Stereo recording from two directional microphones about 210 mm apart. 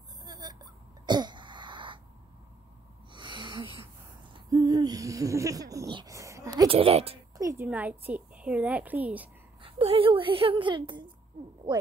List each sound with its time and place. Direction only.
0.2 s a sound: 20° right (ahead or behind)
1.0 s cough: 20° right (ahead or behind)
3.1 s a sound: 20° right (ahead or behind)
4.3 s speech: 20° right (ahead or behind)
7.3 s a woman's voice: 15° right (ahead or behind)
9.6 s a woman's voice: 25° right (ahead or behind)